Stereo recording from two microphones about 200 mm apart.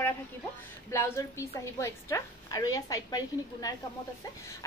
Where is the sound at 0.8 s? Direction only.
15° left (ahead or behind).